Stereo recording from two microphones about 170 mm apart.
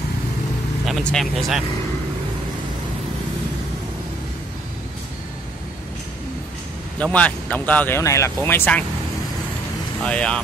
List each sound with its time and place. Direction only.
0.8 s speech: centre (ahead or behind)
7.0 s speech: 10° left (ahead or behind)
10.0 s speech: 5° left (ahead or behind)